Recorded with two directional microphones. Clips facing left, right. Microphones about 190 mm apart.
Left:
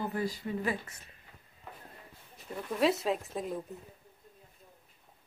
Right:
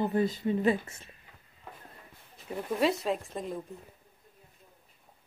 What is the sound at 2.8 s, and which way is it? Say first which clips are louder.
Speech: even; centre (ahead or behind).